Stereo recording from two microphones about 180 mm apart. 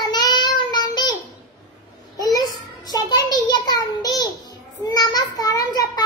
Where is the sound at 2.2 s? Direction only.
20° left (ahead or behind).